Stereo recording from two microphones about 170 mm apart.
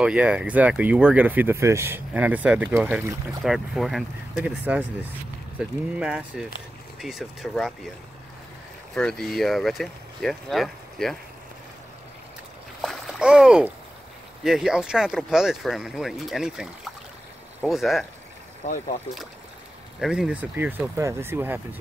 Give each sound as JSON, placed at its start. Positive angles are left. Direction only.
{"t": 0.0, "sound": "speech", "side_deg": -5}
{"t": 3.4, "sound": "speech", "side_deg": 0}
{"t": 8.9, "sound": "speech", "side_deg": 5}
{"t": 12.8, "sound": "splash", "side_deg": 0}
{"t": 14.4, "sound": "speech", "side_deg": -5}
{"t": 18.6, "sound": "speech", "side_deg": 45}
{"t": 20.0, "sound": "speech", "side_deg": -5}